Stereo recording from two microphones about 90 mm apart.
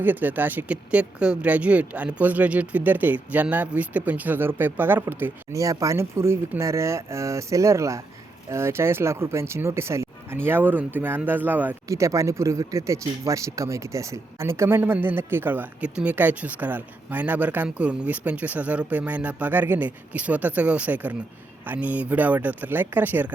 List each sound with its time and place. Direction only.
0.0 s speech: 20° right (ahead or behind)
5.5 s speech: 35° right (ahead or behind); by 11.8 s 20° right (ahead or behind)
11.9 s speech: 35° right (ahead or behind); by 23.3 s 20° right (ahead or behind)